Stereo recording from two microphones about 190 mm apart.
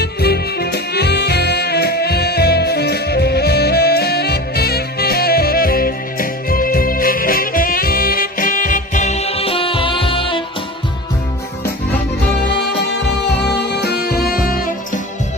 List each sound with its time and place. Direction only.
0.0 s music: 55° left (ahead or behind); by 10.4 s 25° left (ahead or behind)
13.4 s music: 60° left (ahead or behind)